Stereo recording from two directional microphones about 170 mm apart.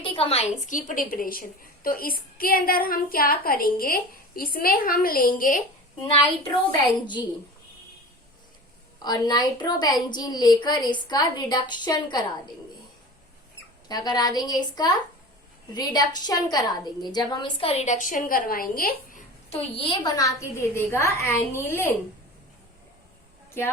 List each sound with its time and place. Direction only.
0.0 s a woman's voice: 30° left (ahead or behind); by 5.6 s 50° left (ahead or behind)
6.0 s a woman's voice: 30° left (ahead or behind)
9.0 s a woman's voice: 25° left (ahead or behind)
13.8 s a woman's voice: 25° left (ahead or behind); by 19.2 s 55° left (ahead or behind)
19.5 s a woman's voice: 35° left (ahead or behind); by 21.9 s 15° left (ahead or behind)